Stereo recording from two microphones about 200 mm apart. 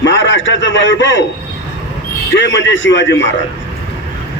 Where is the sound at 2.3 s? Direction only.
65° left (ahead or behind).